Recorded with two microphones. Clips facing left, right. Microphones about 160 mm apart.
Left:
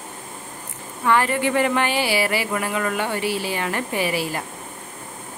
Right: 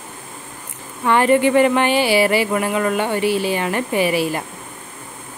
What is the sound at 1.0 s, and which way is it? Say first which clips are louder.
Speech: right 5 dB; 20° right (ahead or behind).